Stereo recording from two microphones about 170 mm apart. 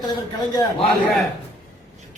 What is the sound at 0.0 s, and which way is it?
Speech, 25° left (ahead or behind).